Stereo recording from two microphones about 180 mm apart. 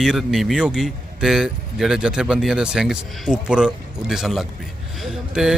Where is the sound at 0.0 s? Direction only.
Centre (ahead or behind).